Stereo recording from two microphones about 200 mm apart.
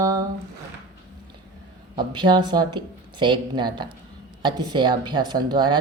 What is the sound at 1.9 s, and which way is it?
Speech, 25° right (ahead or behind).